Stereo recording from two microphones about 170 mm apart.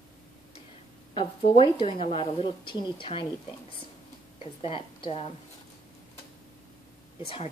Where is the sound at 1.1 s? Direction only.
30° left (ahead or behind).